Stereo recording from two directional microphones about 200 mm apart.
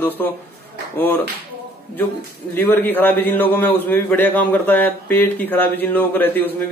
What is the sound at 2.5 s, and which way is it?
A man's voice, 10° left (ahead or behind).